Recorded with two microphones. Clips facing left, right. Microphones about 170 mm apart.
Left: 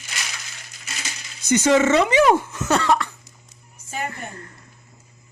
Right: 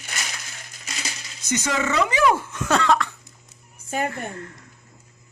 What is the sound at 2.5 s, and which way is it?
Cough, 5° left (ahead or behind).